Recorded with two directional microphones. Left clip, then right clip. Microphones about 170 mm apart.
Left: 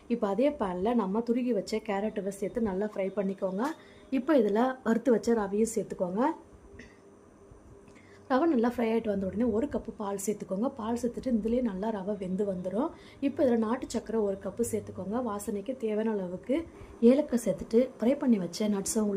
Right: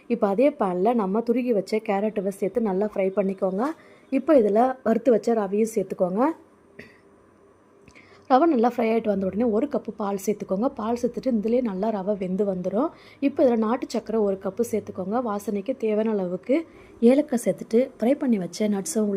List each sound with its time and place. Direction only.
0.1 s a woman's voice: 25° right (ahead or behind)
8.3 s a woman's voice: 20° right (ahead or behind)